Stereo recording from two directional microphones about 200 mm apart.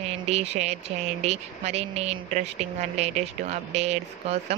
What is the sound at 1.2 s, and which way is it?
Speech, 35° right (ahead or behind).